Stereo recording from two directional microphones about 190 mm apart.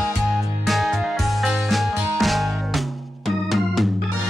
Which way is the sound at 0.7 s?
Centre (ahead or behind).